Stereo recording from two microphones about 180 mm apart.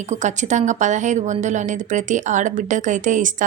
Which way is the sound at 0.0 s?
40° right (ahead or behind).